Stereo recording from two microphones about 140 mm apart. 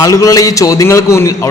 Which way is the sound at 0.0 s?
25° left (ahead or behind).